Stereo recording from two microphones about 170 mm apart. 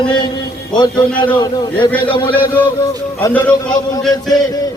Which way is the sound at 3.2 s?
10° left (ahead or behind).